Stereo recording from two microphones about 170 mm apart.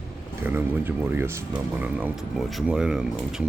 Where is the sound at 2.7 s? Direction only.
5° right (ahead or behind).